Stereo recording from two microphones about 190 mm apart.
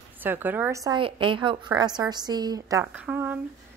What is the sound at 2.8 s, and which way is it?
Speech, 10° right (ahead or behind).